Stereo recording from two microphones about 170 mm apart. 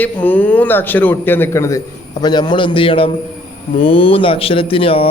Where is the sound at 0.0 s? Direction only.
10° left (ahead or behind).